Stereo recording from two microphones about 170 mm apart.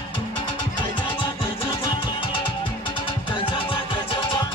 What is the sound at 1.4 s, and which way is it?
Music, 30° left (ahead or behind).